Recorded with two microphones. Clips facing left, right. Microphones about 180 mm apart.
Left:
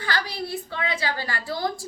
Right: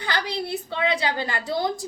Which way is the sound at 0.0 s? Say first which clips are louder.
Right 1 dB; 20° right (ahead or behind).